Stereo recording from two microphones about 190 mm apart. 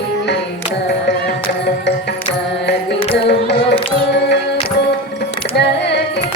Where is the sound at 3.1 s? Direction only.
65° left (ahead or behind).